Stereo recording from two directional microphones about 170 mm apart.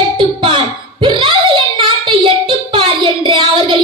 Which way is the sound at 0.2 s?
30° right (ahead or behind).